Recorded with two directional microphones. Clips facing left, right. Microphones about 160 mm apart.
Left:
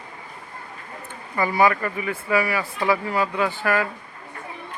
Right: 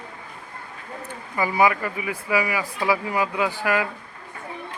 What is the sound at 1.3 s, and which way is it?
Speech, 10° right (ahead or behind).